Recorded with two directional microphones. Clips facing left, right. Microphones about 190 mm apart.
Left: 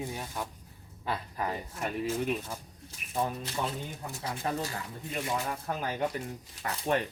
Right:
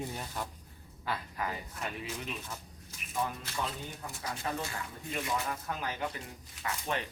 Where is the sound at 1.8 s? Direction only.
45° left (ahead or behind).